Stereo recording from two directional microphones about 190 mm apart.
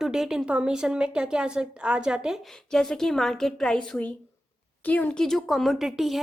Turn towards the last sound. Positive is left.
turn(degrees=0)  # may be behind; listen again after turning